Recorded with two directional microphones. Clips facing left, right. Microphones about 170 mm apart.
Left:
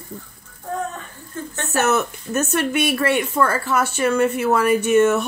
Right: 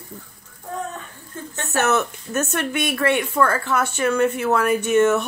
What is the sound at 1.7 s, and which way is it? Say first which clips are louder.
Speech: left 1 dB; 5° left (ahead or behind).